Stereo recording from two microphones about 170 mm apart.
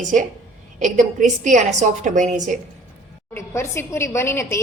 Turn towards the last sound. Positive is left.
turn(degrees=15)  # may be behind; listen again after turning